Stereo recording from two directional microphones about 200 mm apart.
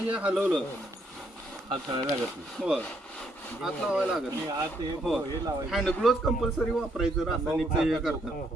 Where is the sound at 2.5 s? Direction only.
Centre (ahead or behind).